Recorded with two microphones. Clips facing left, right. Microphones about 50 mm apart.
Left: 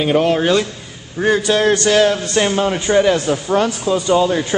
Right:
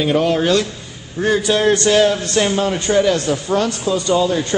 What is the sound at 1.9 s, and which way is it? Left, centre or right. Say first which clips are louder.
Speech: even; left.